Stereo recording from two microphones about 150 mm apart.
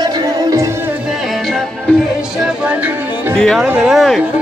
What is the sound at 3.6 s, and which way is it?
Speech, 5° right (ahead or behind).